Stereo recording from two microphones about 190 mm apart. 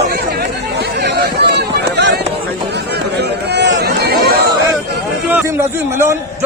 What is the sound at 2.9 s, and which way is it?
Run, 60° right (ahead or behind).